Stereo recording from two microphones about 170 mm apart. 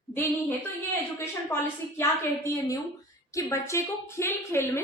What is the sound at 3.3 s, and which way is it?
A woman's voice, 15° left (ahead or behind).